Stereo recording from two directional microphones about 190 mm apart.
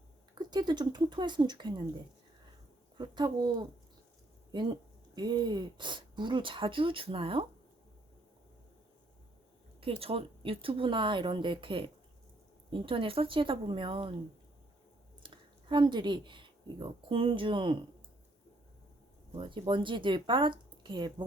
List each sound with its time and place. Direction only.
0.3 s speech: 25° right (ahead or behind)
3.0 s speech: 25° right (ahead or behind)
9.8 s speech: 30° right (ahead or behind)
15.2 s speech: 25° right (ahead or behind)
19.3 s speech: 25° right (ahead or behind)